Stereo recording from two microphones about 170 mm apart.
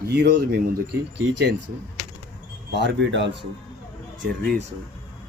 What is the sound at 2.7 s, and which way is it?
Speech, 90° right.